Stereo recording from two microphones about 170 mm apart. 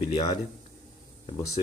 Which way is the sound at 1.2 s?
25° left (ahead or behind).